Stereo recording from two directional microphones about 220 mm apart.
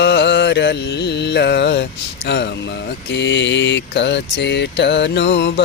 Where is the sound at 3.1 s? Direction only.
55° left (ahead or behind).